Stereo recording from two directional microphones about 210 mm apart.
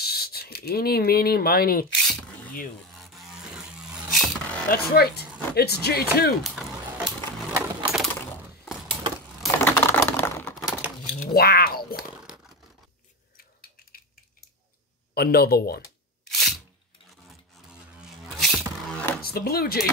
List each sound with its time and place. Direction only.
0.0 s speech: 50° left (ahead or behind)
2.9 s rub: centre (ahead or behind)
3.4 s vehicle: 5° right (ahead or behind)
4.6 s speech: 50° left (ahead or behind)
6.4 s coin: centre (ahead or behind)
9.6 s typing: 10° left (ahead or behind)
10.6 s crumpling: 5° right (ahead or behind)
11.1 s speech: 45° left (ahead or behind)
12.2 s a sound: 5° right (ahead or behind)
13.4 s a sound: 45° left (ahead or behind)
15.1 s speech: 45° left (ahead or behind)
16.3 s a sound: centre (ahead or behind)
18.2 s beatboxing: centre (ahead or behind)
19.2 s speech: 45° left (ahead or behind)